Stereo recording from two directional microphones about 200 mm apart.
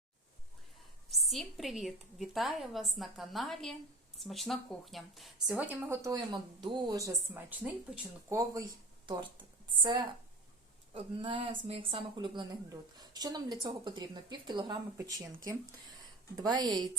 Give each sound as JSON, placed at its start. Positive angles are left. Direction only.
{"t": 1.1, "sound": "a woman's voice", "side_deg": 0}